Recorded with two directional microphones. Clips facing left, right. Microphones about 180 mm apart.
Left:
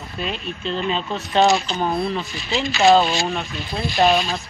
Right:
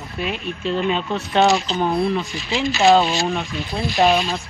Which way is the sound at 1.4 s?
10° left (ahead or behind).